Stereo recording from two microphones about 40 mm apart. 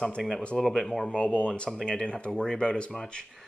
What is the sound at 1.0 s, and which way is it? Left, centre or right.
Speech, left.